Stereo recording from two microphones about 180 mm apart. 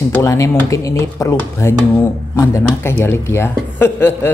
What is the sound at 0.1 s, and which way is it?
Speech, 15° left (ahead or behind).